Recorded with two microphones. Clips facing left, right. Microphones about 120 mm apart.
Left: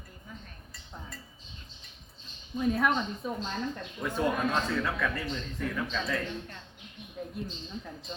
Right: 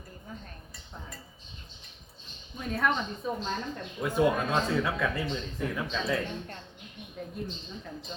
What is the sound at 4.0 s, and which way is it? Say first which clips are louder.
A man's voice: right 3 dB; 15° right (ahead or behind).